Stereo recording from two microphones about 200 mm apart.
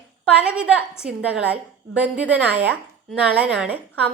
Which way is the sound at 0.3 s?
5° right (ahead or behind).